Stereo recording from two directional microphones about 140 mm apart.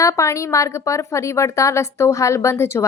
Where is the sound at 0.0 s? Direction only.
20° left (ahead or behind).